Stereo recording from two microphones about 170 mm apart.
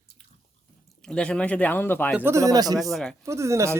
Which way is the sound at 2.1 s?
15° right (ahead or behind).